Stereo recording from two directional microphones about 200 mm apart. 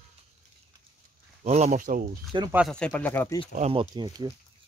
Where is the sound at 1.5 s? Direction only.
35° right (ahead or behind).